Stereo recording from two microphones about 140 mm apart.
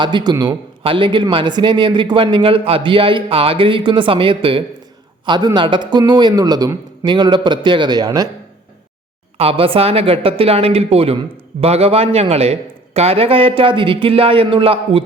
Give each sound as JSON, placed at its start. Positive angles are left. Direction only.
{"t": 0.0, "sound": "speech", "side_deg": -35}
{"t": 9.4, "sound": "a man's voice", "side_deg": -40}